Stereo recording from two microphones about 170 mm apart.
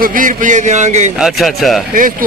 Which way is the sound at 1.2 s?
Centre (ahead or behind).